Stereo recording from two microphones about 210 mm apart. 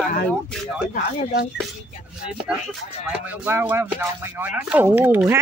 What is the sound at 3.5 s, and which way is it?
Speech, 10° right (ahead or behind).